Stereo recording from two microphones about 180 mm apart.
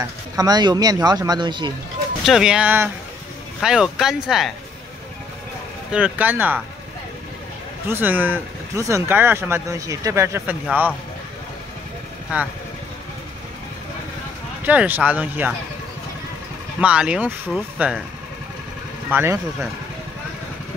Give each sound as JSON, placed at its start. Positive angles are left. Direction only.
{"t": 0.0, "sound": "speech", "side_deg": -20}
{"t": 2.2, "sound": "speech", "side_deg": -5}
{"t": 5.9, "sound": "speech", "side_deg": -5}
{"t": 7.9, "sound": "speech", "side_deg": -10}
{"t": 12.3, "sound": "speech", "side_deg": -5}
{"t": 14.6, "sound": "speech", "side_deg": -10}
{"t": 16.8, "sound": "speech", "side_deg": -5}
{"t": 19.1, "sound": "speech", "side_deg": -15}